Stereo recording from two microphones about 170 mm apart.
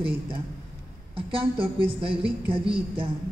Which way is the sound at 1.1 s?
30° right (ahead or behind).